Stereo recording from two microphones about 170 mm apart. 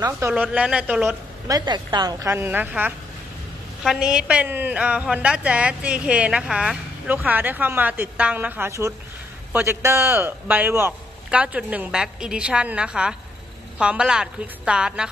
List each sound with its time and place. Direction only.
0.3 s a woman's voice: 5° right (ahead or behind)
1.5 s a woman's voice: 25° right (ahead or behind); by 15.0 s 5° right (ahead or behind)